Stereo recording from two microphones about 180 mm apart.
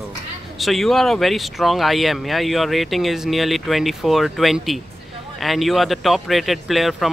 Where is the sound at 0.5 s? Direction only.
Centre (ahead or behind).